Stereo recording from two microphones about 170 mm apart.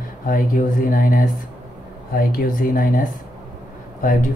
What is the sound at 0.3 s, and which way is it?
Speech, 55° left (ahead or behind).